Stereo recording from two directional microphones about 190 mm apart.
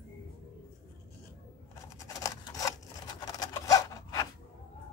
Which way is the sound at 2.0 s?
20° left (ahead or behind).